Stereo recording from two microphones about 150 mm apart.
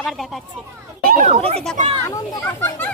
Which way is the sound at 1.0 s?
65° right (ahead or behind).